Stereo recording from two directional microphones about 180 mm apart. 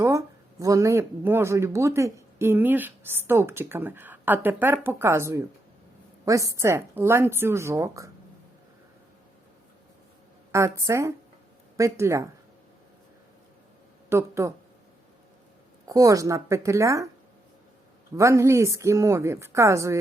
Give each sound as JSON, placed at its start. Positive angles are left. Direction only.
{"t": 0.6, "sound": "speech", "side_deg": -15}
{"t": 10.5, "sound": "speech", "side_deg": -15}
{"t": 14.1, "sound": "speech", "side_deg": -15}
{"t": 15.9, "sound": "speech", "side_deg": -20}
{"t": 18.2, "sound": "speech", "side_deg": -15}